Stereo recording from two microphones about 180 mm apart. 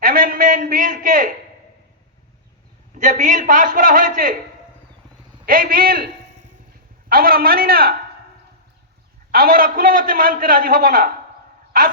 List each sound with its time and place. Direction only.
0.0 s a sound: 50° right (ahead or behind)
3.0 s a man's voice: 45° right (ahead or behind)
5.5 s a man's voice: 55° right (ahead or behind)
7.1 s a man's voice: 55° right (ahead or behind)
9.3 s a man's voice: 55° right (ahead or behind)